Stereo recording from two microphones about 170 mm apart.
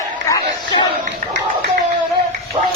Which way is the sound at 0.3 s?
25° left (ahead or behind).